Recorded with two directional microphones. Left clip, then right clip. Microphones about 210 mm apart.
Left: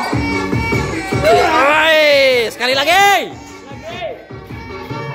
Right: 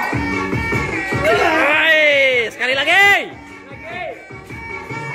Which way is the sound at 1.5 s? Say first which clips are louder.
Left 3 dB; 10° left (ahead or behind).